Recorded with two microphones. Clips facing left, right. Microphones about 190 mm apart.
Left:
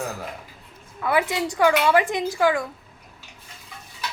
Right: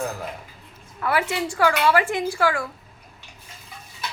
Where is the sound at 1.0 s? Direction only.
15° left (ahead or behind).